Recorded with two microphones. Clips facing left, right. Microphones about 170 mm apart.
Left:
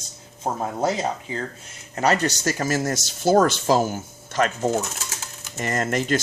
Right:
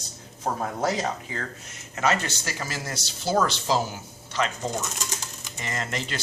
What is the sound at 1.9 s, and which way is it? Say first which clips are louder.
Speech: left 4 dB; 35° left (ahead or behind).